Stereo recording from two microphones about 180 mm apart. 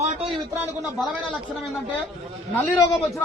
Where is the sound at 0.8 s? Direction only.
Centre (ahead or behind).